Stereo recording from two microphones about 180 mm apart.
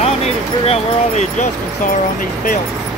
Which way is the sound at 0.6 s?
35° left (ahead or behind).